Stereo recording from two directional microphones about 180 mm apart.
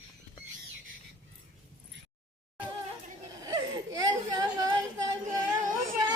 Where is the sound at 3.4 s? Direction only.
20° right (ahead or behind).